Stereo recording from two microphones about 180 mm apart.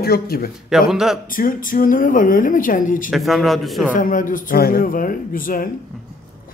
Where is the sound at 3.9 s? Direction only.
45° left (ahead or behind).